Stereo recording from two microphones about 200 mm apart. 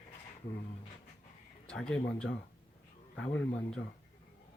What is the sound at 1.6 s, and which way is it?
A man's voice, 5° left (ahead or behind).